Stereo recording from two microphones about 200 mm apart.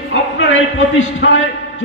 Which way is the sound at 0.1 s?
70° left (ahead or behind).